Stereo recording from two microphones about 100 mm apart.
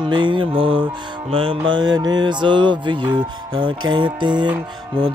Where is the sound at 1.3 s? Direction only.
70° right (ahead or behind).